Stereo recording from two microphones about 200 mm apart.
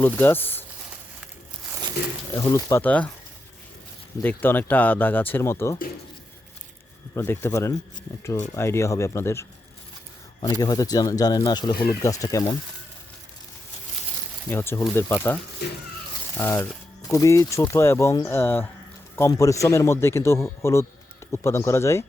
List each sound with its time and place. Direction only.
0.0 s speech: 10° left (ahead or behind)
2.3 s speech: 15° left (ahead or behind)
4.2 s speech: 10° left (ahead or behind)
7.1 s speech: 10° left (ahead or behind)
10.6 s speech: 20° left (ahead or behind)
14.5 s speech: 10° left (ahead or behind)
15.6 s speech: 55° left (ahead or behind)
16.4 s speech: 10° left (ahead or behind)